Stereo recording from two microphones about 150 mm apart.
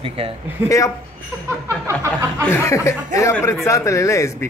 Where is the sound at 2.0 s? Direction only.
20° right (ahead or behind).